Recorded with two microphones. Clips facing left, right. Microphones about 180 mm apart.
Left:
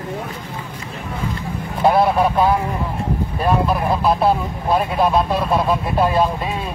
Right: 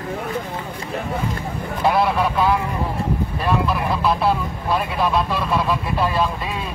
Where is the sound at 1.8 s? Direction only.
40° left (ahead or behind).